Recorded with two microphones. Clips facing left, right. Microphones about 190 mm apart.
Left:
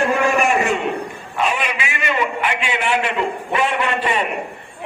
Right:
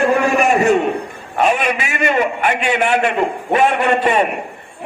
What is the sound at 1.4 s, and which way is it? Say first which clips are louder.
A man's voice: right 5 dB; 50° right (ahead or behind).